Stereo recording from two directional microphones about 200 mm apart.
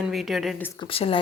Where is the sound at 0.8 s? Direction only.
30° left (ahead or behind).